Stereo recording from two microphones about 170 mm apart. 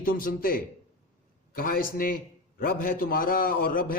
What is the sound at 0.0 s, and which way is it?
A man's voice, 55° left (ahead or behind).